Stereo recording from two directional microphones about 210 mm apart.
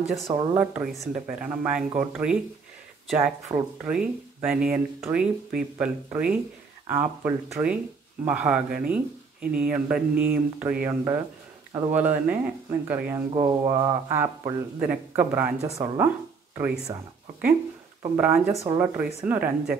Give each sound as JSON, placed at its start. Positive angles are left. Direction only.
{"t": 0.0, "sound": "speech", "side_deg": 0}
{"t": 0.3, "sound": "speech", "side_deg": -10}
{"t": 13.3, "sound": "speech", "side_deg": -20}
{"t": 18.0, "sound": "speech", "side_deg": -10}